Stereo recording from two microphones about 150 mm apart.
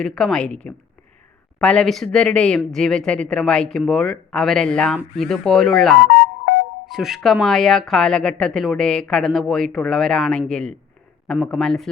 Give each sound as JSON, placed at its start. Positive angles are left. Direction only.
{"t": 0.0, "sound": "speech", "side_deg": 5}
{"t": 6.1, "sound": "music", "side_deg": 65}
{"t": 6.9, "sound": "speech", "side_deg": 0}